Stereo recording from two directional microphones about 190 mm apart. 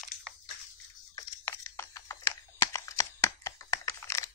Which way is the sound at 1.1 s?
15° left (ahead or behind).